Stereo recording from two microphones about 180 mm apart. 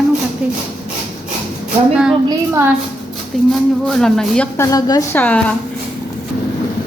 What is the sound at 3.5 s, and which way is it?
Speech, 5° left (ahead or behind).